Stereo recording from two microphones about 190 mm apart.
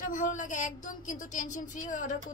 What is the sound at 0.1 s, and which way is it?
A woman's voice, 40° left (ahead or behind).